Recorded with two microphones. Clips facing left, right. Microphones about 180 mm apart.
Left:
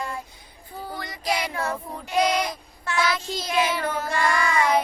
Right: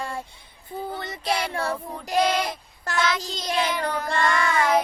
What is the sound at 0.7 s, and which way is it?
Child singing, 25° right (ahead or behind).